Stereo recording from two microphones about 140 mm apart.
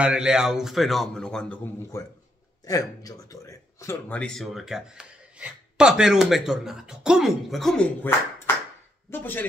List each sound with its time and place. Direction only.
0.0 s speech: 5° right (ahead or behind)
1.9 s speech: 20° left (ahead or behind)